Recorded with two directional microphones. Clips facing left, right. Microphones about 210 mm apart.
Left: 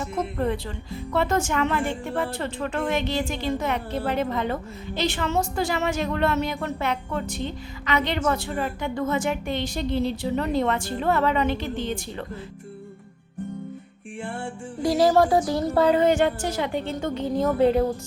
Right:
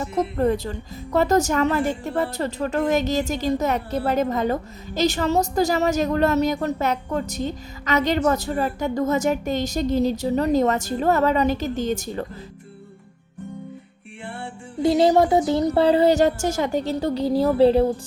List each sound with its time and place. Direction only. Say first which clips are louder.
0.0 s speech: right 5 dB; 40° right (ahead or behind)
14.8 s speech: right 2 dB; 25° right (ahead or behind)